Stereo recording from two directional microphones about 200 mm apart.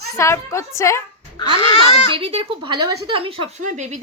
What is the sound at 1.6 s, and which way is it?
Speech, 30° left (ahead or behind).